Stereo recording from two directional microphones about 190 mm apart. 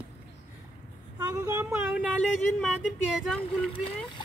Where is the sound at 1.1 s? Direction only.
15° right (ahead or behind).